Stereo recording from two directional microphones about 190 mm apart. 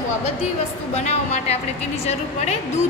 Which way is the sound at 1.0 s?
35° left (ahead or behind).